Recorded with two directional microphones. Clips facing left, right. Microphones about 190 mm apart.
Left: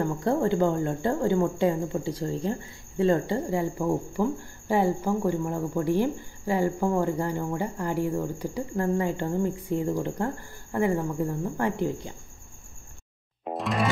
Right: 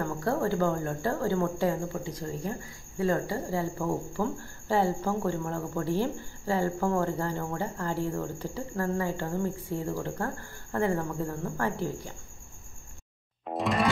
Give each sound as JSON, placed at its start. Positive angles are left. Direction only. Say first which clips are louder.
{"t": 0.0, "sound": "cricket", "louder": "left 4 dB", "side_deg": 20}
{"t": 2.0, "sound": "speech", "louder": "left 6 dB", "side_deg": 30}
{"t": 13.6, "sound": "music", "louder": "right 1 dB", "side_deg": 0}